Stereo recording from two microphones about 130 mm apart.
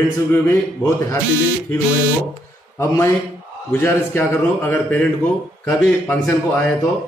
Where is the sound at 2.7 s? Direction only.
20° left (ahead or behind).